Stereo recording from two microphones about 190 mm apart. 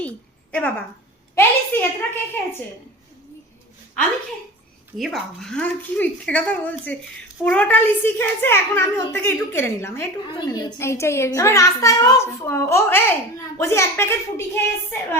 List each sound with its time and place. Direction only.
0.5 s a woman's voice: 10° left (ahead or behind)
4.9 s a woman's voice: centre (ahead or behind)